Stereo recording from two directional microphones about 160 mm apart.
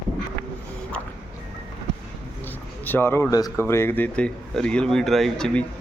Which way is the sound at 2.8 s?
15° left (ahead or behind).